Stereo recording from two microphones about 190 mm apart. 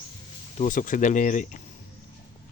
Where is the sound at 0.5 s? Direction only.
40° left (ahead or behind).